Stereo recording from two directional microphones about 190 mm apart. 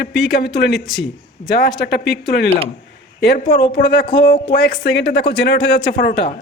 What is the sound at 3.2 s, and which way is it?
Speech, 60° left (ahead or behind).